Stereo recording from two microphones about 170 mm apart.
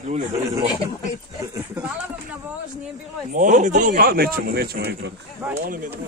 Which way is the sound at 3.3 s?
50° right (ahead or behind).